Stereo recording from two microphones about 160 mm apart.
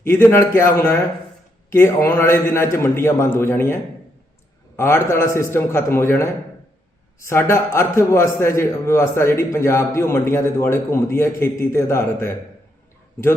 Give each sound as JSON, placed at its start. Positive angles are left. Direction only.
{"t": 0.0, "sound": "a man's voice", "side_deg": 15}
{"t": 4.8, "sound": "a man's voice", "side_deg": 15}